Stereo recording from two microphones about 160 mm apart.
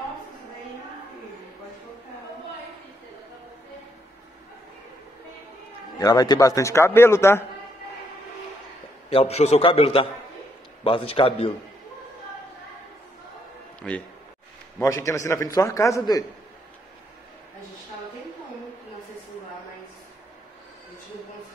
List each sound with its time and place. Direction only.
5.9 s a man's voice: 25° left (ahead or behind)
9.1 s a man's voice: 40° left (ahead or behind)
14.8 s a man's voice: 20° left (ahead or behind)